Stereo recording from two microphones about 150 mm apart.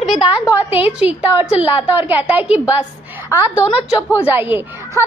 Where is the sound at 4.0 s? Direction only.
15° left (ahead or behind).